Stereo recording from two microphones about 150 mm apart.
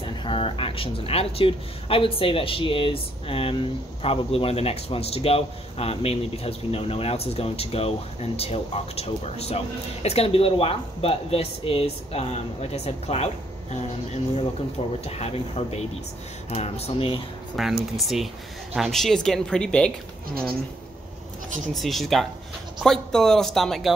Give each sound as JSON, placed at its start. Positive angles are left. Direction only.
{"t": 0.0, "sound": "speech", "side_deg": 35}
{"t": 17.6, "sound": "a woman's voice", "side_deg": 0}
{"t": 21.7, "sound": "a woman's voice", "side_deg": 0}